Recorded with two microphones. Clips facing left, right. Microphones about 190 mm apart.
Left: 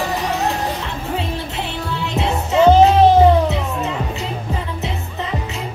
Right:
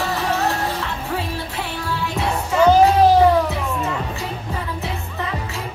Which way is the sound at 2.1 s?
25° left (ahead or behind).